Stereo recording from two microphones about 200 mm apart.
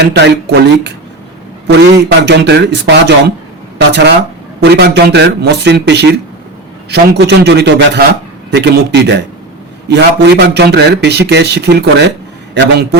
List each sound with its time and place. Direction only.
0.0 s a man's voice: 55° right (ahead or behind)